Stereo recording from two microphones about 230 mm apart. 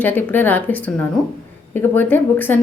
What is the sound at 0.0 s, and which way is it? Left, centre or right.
A woman's voice, centre.